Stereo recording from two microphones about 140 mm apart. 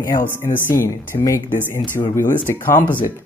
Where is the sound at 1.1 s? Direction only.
40° left (ahead or behind).